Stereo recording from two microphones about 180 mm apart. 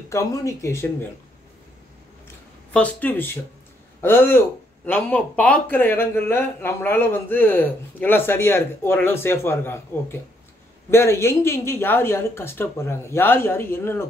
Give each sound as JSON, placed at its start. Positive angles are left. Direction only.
{"t": 0.1, "sound": "speech", "side_deg": 20}
{"t": 2.7, "sound": "speech", "side_deg": 10}